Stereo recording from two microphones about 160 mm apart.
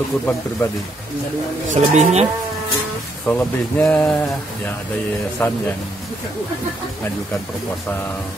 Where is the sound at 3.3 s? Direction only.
10° left (ahead or behind).